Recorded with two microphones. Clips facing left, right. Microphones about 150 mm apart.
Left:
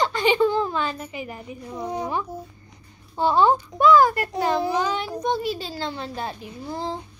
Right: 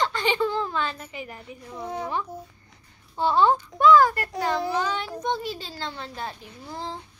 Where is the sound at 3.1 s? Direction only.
10° left (ahead or behind).